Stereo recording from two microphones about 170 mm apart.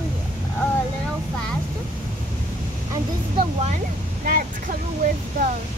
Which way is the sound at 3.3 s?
40° right (ahead or behind).